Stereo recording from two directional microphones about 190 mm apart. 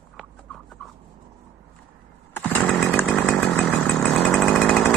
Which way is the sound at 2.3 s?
10° left (ahead or behind).